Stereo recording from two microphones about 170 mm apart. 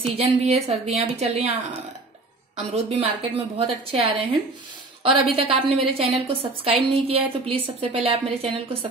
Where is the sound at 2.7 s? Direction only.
35° right (ahead or behind).